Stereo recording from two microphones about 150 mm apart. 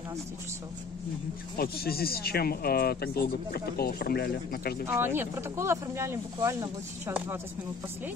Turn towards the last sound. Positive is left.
turn(degrees=-20)  # may be behind; listen again after turning